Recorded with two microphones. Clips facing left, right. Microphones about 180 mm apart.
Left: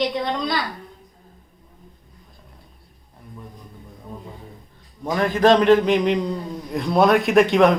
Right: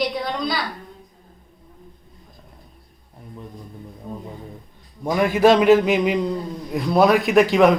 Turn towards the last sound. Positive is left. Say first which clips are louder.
# even
turn(degrees=0)  # may be behind; listen again after turning